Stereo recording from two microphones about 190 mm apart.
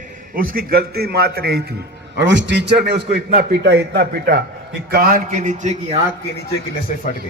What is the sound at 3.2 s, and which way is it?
A man's voice, 45° right (ahead or behind).